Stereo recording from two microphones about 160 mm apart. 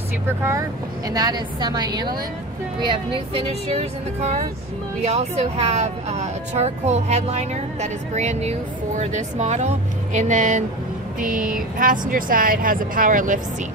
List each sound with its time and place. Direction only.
0.4 s a woman's voice: 20° right (ahead or behind); by 13.4 s 55° right (ahead or behind)